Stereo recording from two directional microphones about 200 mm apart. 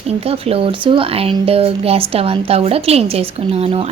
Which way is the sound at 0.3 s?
30° right (ahead or behind).